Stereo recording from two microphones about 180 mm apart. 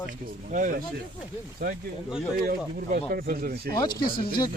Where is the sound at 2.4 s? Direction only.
55° right (ahead or behind).